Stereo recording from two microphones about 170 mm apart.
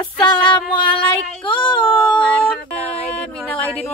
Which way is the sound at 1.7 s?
5° left (ahead or behind).